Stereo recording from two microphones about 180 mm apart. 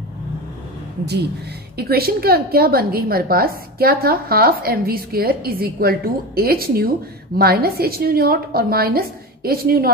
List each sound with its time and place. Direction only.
1.8 s a woman's voice: 60° right (ahead or behind)